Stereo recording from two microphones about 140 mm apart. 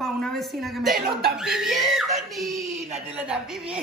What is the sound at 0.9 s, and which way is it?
Speech, 90° right.